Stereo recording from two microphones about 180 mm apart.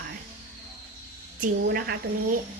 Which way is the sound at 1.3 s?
50° right (ahead or behind).